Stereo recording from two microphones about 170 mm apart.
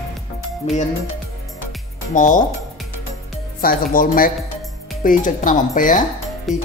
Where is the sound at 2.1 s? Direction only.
50° left (ahead or behind).